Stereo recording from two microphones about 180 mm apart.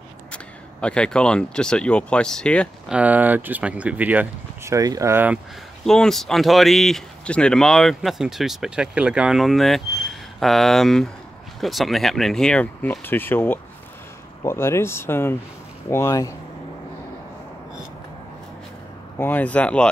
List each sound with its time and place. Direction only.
0.3 s speech: 5° left (ahead or behind)
2.9 s speech: 10° right (ahead or behind)
5.9 s speech: centre (ahead or behind)
19.1 s speech: 10° left (ahead or behind)